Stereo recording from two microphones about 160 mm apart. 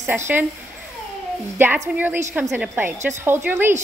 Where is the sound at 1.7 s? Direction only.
10° right (ahead or behind).